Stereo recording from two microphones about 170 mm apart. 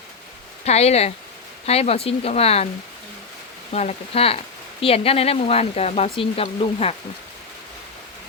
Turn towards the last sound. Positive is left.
turn(degrees=35)  # may be behind; listen again after turning